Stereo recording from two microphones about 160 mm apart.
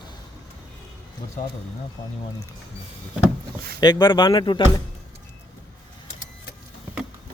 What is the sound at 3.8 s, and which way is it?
Speech, 25° left (ahead or behind).